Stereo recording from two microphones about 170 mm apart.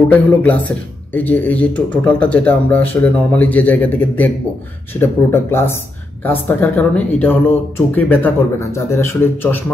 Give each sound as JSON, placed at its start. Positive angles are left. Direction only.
{"t": 0.3, "sound": "speech", "side_deg": 10}